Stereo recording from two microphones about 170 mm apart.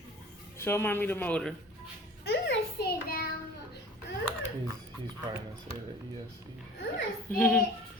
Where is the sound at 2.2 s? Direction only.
80° left; by 3.2 s 60° left (ahead or behind).